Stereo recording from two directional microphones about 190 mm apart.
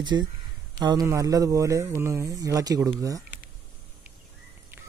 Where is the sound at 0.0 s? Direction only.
25° right (ahead or behind).